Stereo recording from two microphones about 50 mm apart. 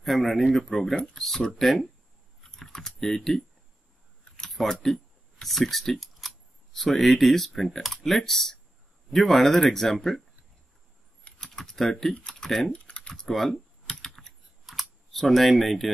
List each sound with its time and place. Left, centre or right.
0.0 s speech: centre
4.4 s a sound: centre
4.8 s speech: centre
11.5 s speech: centre
12.4 s speech: centre
12.7 s typing: left; by 15.9 s centre